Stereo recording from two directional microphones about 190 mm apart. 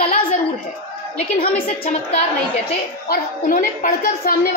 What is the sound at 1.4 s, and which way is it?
A woman's voice, 35° left (ahead or behind).